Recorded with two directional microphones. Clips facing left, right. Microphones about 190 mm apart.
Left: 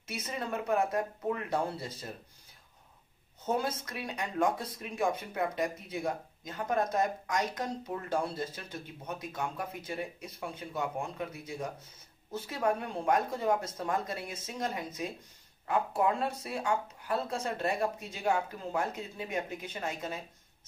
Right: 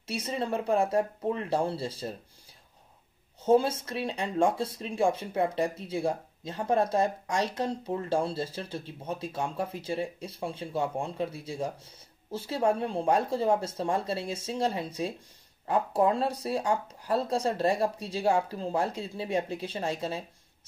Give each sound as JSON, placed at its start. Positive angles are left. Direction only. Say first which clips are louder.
{"t": 0.0, "sound": "speech", "louder": "right 6 dB", "side_deg": -30}
{"t": 3.4, "sound": "speech", "louder": "right 9 dB", "side_deg": -30}